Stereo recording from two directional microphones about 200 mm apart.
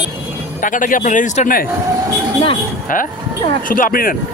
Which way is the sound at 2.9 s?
40° left (ahead or behind).